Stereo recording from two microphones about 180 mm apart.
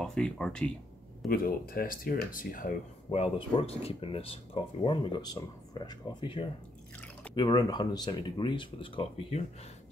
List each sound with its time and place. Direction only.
0.0 s speech: 5° left (ahead or behind)
1.3 s speech: 55° left (ahead or behind)
3.1 s speech: 35° left (ahead or behind)